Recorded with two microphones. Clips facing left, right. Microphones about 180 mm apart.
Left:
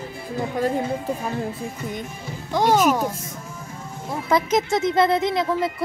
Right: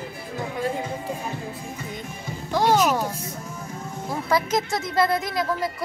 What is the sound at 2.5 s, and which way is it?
Speech, 10° left (ahead or behind).